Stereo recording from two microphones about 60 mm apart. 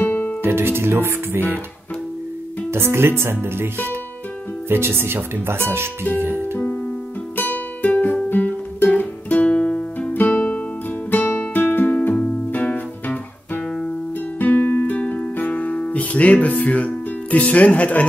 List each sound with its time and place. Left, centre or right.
0.0 s music: left
0.4 s speech: right
2.7 s speech: right
6.1 s music: right
7.3 s music: left
10.1 s guitar: left
11.1 s music: left
12.2 s music: centre
14.4 s music: left